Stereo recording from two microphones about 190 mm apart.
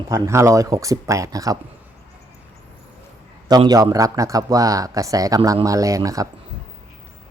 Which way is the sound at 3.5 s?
20° right (ahead or behind).